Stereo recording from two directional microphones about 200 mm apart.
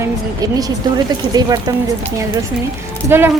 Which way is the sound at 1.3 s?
20° right (ahead or behind).